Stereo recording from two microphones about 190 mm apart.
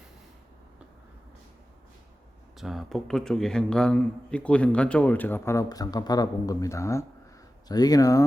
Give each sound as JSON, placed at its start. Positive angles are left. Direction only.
{"t": 2.6, "sound": "a man's voice", "side_deg": 0}